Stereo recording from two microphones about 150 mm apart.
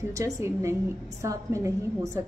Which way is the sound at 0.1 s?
20° right (ahead or behind).